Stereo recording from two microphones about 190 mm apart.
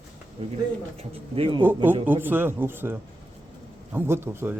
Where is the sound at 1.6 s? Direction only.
10° right (ahead or behind).